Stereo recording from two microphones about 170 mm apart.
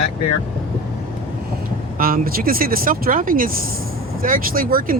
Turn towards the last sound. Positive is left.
turn(degrees=-55)  # may be behind; listen again after turning